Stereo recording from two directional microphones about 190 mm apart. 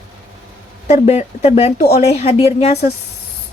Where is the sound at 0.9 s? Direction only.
35° left (ahead or behind).